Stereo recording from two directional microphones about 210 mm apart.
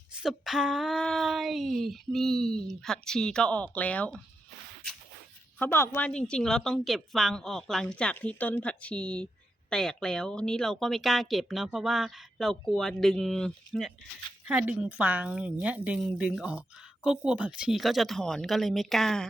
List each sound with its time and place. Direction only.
0.1 s a woman's voice: centre (ahead or behind)
5.5 s a woman's voice: 10° left (ahead or behind)